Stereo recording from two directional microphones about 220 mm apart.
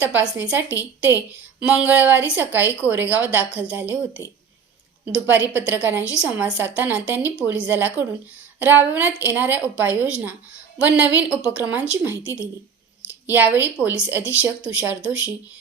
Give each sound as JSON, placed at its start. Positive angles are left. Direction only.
{"t": 0.0, "sound": "a woman's voice", "side_deg": -10}
{"t": 4.2, "sound": "speech", "side_deg": 15}
{"t": 5.3, "sound": "a woman's voice", "side_deg": -10}
{"t": 13.2, "sound": "a woman's voice", "side_deg": -10}